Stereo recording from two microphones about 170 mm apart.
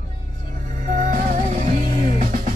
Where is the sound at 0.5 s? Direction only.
50° right (ahead or behind).